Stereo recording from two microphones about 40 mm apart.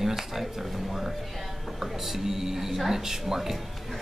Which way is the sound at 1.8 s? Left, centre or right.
Centre.